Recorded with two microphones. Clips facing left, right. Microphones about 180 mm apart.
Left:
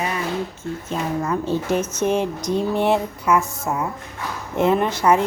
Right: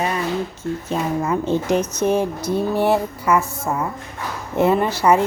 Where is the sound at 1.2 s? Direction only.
15° right (ahead or behind).